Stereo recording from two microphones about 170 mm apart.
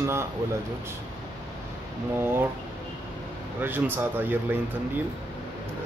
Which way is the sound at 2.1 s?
15° right (ahead or behind).